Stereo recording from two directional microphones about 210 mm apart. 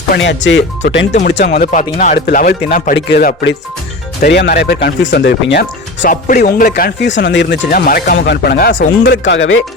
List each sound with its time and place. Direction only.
0.1 s speech: 60° left (ahead or behind)
1.5 s speech: 40° left (ahead or behind); by 7.6 s 60° left (ahead or behind)
7.7 s speech: 45° left (ahead or behind)
9.0 s speech: 60° left (ahead or behind)